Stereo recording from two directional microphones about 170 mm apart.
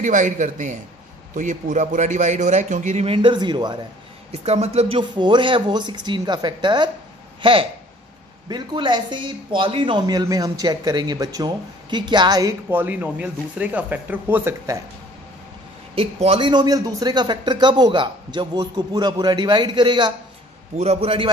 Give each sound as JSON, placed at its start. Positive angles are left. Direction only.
{"t": 0.0, "sound": "a man's voice", "side_deg": -45}
{"t": 4.3, "sound": "a man's voice", "side_deg": -40}
{"t": 8.5, "sound": "a man's voice", "side_deg": -25}
{"t": 12.6, "sound": "speech", "side_deg": -10}
{"t": 15.9, "sound": "a man's voice", "side_deg": -35}
{"t": 20.7, "sound": "a man's voice", "side_deg": -40}